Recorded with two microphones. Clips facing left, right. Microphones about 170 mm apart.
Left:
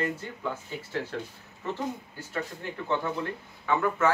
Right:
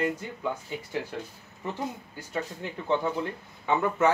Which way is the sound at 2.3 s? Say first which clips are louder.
Right 1 dB; 15° right (ahead or behind).